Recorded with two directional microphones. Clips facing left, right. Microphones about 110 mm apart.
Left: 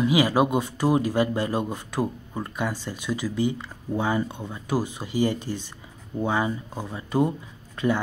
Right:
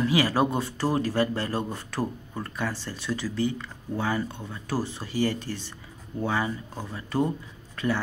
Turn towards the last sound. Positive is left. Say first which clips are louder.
# left 3 dB
turn(degrees=20)  # may be behind; listen again after turning